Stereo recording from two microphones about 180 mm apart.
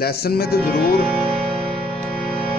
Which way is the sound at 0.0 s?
60° left (ahead or behind).